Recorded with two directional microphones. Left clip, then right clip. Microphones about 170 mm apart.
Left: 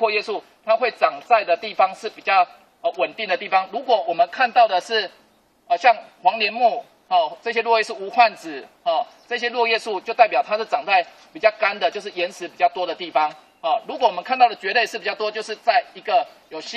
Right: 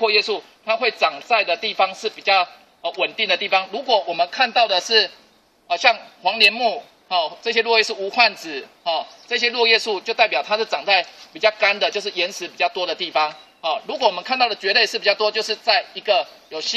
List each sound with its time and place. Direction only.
0.0 s a man's voice: 45° left (ahead or behind)